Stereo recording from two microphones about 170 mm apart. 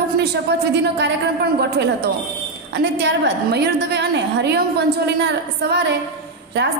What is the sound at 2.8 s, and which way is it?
A woman's voice, 90° right.